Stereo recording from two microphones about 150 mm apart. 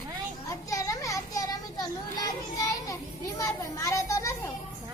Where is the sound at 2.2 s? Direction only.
25° left (ahead or behind).